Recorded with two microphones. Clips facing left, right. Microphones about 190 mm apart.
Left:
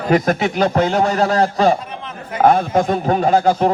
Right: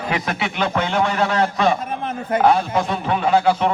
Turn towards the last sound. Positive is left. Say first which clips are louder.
# left 3 dB
turn(degrees=40)  # may be behind; listen again after turning